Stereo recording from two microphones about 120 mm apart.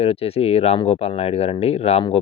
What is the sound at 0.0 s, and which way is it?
Speech, 55° left (ahead or behind).